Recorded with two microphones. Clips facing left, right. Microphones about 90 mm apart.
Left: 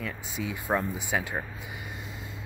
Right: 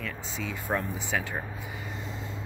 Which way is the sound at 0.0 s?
10° left (ahead or behind).